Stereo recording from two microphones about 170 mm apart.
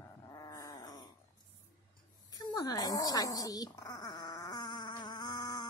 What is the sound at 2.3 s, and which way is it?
Dog, 25° left (ahead or behind).